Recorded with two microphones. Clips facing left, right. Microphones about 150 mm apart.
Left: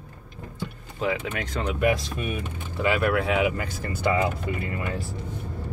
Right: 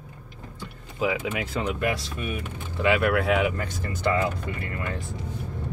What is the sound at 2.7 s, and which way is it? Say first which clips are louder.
Speech: right 1 dB; centre (ahead or behind).